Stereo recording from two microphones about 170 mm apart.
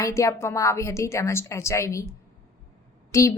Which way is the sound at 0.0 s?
15° left (ahead or behind).